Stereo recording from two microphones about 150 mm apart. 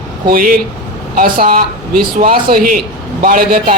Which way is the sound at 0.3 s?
75° right (ahead or behind).